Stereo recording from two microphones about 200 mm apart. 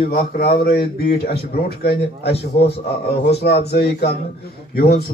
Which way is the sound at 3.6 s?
55° left (ahead or behind).